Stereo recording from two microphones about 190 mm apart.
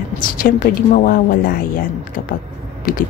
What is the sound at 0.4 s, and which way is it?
Speech, 45° left (ahead or behind).